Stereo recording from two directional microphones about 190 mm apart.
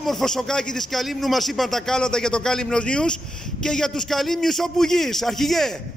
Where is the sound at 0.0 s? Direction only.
Centre (ahead or behind).